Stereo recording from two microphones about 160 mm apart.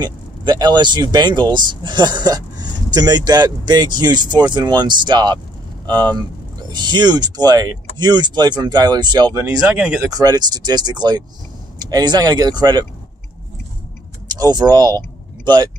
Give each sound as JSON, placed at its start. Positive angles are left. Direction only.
{"t": 0.0, "sound": "speech", "side_deg": -25}
{"t": 9.7, "sound": "speech", "side_deg": -5}
{"t": 10.0, "sound": "speech", "side_deg": -25}
{"t": 14.3, "sound": "speech", "side_deg": -25}